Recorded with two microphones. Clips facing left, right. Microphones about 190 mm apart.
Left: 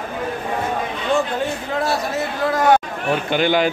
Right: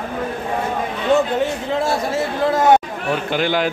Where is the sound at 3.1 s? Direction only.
Centre (ahead or behind).